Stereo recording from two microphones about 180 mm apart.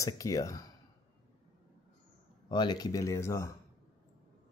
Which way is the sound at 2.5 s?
25° left (ahead or behind).